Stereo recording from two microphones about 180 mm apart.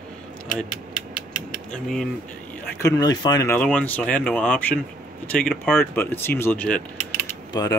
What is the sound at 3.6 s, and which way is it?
Speech, 5° left (ahead or behind).